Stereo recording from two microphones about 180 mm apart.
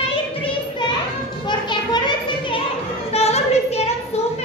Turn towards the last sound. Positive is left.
turn(degrees=35)  # may be behind; listen again after turning